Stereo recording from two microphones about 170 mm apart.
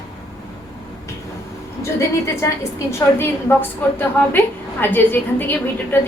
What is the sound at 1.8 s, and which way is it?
A woman's voice, 15° left (ahead or behind).